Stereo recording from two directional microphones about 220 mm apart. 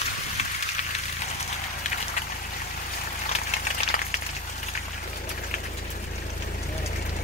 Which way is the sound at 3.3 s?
30° left (ahead or behind).